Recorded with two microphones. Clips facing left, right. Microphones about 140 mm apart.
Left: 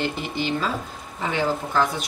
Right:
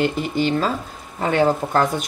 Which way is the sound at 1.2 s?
55° right (ahead or behind).